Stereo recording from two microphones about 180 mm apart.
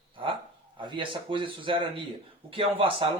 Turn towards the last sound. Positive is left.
turn(degrees=-30)  # may be behind; listen again after turning